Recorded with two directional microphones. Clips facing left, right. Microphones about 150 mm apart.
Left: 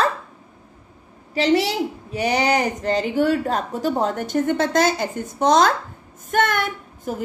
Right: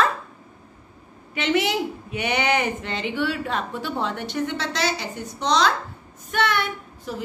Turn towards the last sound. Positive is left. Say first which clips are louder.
# left 4 dB
turn(degrees=45)  # may be behind; listen again after turning